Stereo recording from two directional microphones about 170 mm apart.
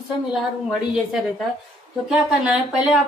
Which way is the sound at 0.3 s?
Centre (ahead or behind).